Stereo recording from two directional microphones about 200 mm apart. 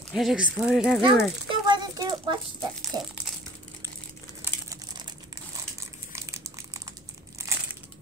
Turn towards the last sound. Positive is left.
turn(degrees=-15)  # may be behind; listen again after turning